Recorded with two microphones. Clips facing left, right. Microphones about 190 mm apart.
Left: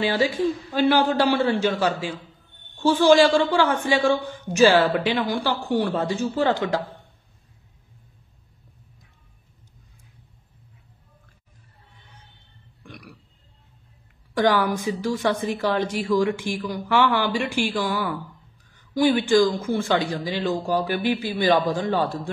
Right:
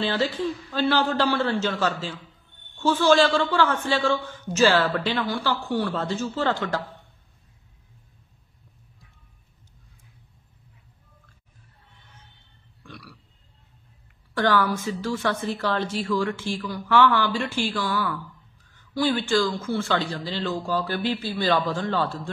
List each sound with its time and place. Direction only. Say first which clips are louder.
0.0 s a man's voice: left 3 dB; 10° left (ahead or behind)
12.8 s a sound: left 1 dB; 15° left (ahead or behind)
14.3 s a man's voice: left 2 dB; 15° left (ahead or behind)